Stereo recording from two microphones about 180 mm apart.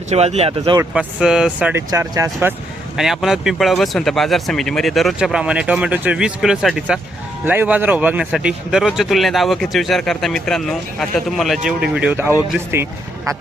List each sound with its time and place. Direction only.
0.1 s speech: 35° right (ahead or behind)
0.9 s speech: 5° right (ahead or behind)
1.9 s speech: 20° right (ahead or behind)
3.0 s speech: centre (ahead or behind)